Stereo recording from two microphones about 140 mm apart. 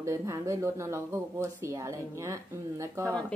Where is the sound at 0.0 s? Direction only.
20° right (ahead or behind).